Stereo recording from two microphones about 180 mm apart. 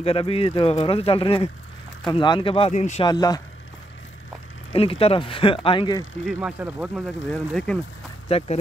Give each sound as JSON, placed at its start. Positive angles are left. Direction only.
{"t": 0.0, "sound": "speech", "side_deg": 30}
{"t": 3.1, "sound": "speech", "side_deg": 20}
{"t": 4.7, "sound": "speech", "side_deg": 30}
{"t": 6.2, "sound": "speech", "side_deg": -5}
{"t": 7.2, "sound": "speech", "side_deg": 5}
{"t": 8.3, "sound": "speech", "side_deg": 30}